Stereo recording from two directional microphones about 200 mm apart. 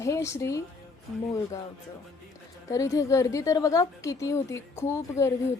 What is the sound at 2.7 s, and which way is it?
A woman's voice, 15° left (ahead or behind).